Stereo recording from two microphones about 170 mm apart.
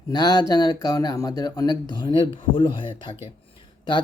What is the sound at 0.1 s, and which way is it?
Speech, 25° left (ahead or behind).